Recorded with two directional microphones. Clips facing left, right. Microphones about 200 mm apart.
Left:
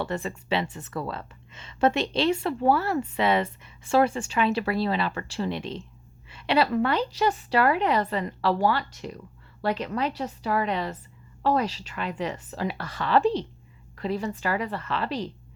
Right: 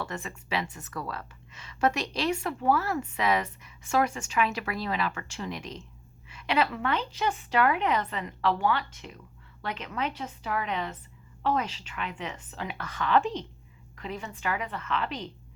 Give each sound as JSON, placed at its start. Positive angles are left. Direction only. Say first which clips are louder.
{"t": 0.0, "sound": "a woman's voice", "louder": "left 6 dB", "side_deg": 35}